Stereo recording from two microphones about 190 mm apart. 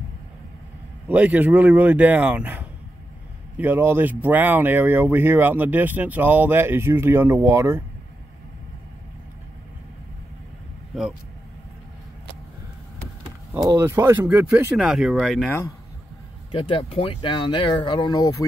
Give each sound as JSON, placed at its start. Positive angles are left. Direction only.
{"t": 1.0, "sound": "speech", "side_deg": -10}
{"t": 13.5, "sound": "speech", "side_deg": -15}
{"t": 16.5, "sound": "speech", "side_deg": 30}